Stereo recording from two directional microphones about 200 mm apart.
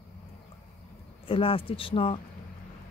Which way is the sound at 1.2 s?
25° left (ahead or behind).